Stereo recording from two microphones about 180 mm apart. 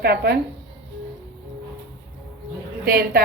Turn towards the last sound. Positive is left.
turn(degrees=-60)  # may be behind; listen again after turning